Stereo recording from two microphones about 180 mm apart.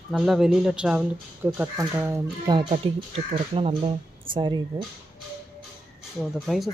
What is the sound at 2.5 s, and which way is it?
Speech, 30° right (ahead or behind).